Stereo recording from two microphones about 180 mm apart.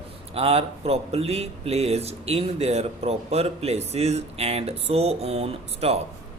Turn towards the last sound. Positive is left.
turn(degrees=-35)  # may be behind; listen again after turning